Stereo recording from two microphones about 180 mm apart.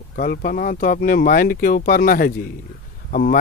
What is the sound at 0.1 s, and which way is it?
A man's voice, 55° left (ahead or behind).